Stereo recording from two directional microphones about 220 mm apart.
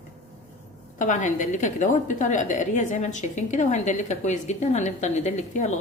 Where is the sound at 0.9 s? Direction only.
35° left (ahead or behind).